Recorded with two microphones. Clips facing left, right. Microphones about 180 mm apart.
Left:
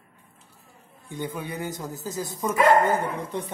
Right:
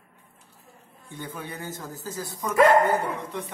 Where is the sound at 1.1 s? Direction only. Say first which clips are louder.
Left 5 dB; 15° left (ahead or behind).